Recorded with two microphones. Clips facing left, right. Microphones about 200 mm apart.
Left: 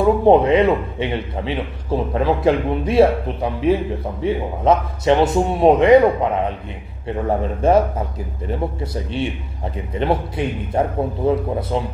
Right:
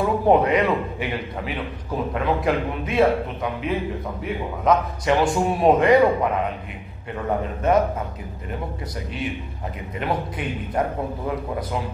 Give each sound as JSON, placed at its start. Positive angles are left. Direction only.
{"t": 0.0, "sound": "a man's voice", "side_deg": 25}
{"t": 7.2, "sound": "a man's voice", "side_deg": 30}